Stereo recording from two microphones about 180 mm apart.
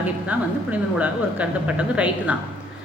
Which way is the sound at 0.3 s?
10° right (ahead or behind).